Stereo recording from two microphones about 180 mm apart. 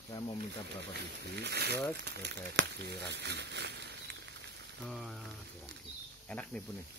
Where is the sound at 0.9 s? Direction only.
65° right (ahead or behind).